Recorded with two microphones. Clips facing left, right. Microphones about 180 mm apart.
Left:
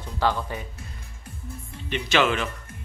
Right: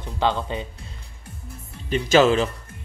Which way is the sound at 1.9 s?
40° right (ahead or behind).